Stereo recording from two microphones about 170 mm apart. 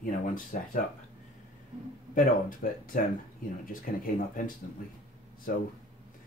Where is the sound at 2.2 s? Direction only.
55° left (ahead or behind).